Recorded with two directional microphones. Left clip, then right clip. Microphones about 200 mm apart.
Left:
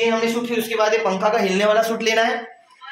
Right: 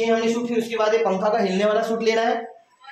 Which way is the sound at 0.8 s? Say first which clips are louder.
Left 2 dB; 20° left (ahead or behind).